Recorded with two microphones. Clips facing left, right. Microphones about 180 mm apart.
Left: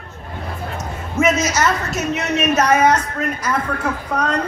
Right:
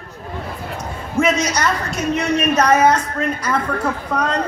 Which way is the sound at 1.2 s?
5° left (ahead or behind).